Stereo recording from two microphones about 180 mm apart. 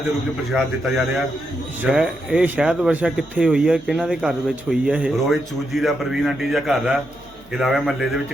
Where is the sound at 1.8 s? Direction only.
5° right (ahead or behind).